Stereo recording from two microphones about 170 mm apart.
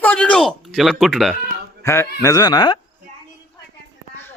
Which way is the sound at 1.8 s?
15° left (ahead or behind).